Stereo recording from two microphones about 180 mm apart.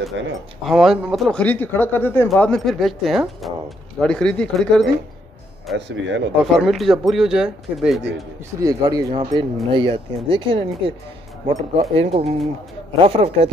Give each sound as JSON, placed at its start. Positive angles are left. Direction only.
{"t": 0.2, "sound": "speech", "side_deg": -90}
{"t": 0.7, "sound": "speech", "side_deg": 0}
{"t": 5.8, "sound": "speech", "side_deg": -80}
{"t": 6.3, "sound": "speech", "side_deg": 0}
{"t": 8.5, "sound": "speech", "side_deg": -20}
{"t": 11.8, "sound": "speech", "side_deg": -35}